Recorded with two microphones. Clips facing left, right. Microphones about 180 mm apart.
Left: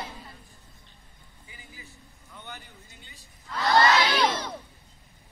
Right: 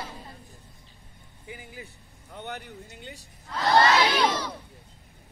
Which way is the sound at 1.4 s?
60° right (ahead or behind).